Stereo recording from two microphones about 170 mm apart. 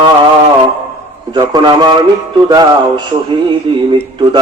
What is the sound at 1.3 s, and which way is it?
Music, 25° right (ahead or behind).